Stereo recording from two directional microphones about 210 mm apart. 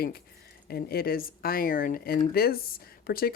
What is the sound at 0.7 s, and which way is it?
Speech, 45° left (ahead or behind).